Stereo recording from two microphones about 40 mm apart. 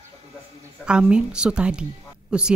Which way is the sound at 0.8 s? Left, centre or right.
Right.